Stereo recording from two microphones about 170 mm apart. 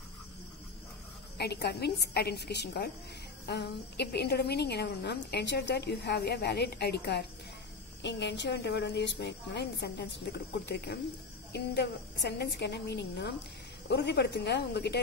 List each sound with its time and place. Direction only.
1.4 s a woman's voice: 75° left (ahead or behind)
8.0 s a woman's voice: 90° left